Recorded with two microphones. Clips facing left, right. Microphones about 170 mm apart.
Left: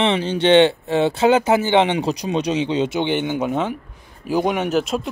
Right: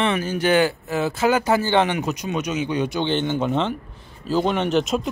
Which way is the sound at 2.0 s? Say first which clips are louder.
Left 4 dB; 35° left (ahead or behind).